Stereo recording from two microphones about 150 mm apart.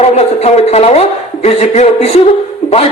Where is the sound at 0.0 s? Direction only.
45° left (ahead or behind).